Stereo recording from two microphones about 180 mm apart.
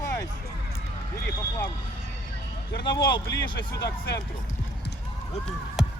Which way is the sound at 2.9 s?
25° left (ahead or behind).